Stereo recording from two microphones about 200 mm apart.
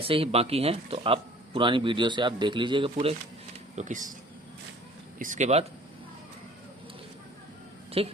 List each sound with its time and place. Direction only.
0.0 s speech: 30° right (ahead or behind)
3.8 s speech: 40° right (ahead or behind)
5.2 s speech: 40° right (ahead or behind)
8.0 s speech: 30° right (ahead or behind)